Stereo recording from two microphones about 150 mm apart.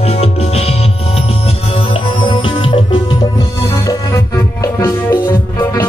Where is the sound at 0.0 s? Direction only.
40° left (ahead or behind).